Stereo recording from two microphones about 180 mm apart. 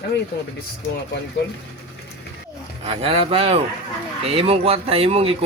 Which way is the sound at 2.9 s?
35° right (ahead or behind).